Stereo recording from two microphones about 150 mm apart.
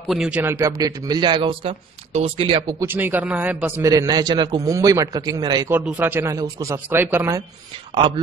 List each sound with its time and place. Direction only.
0.1 s a man's voice: 5° right (ahead or behind); by 1.7 s 35° right (ahead or behind)
1.7 s speech: 45° right (ahead or behind)
2.8 s a man's voice: 15° right (ahead or behind)
5.7 s a man's voice: 10° right (ahead or behind)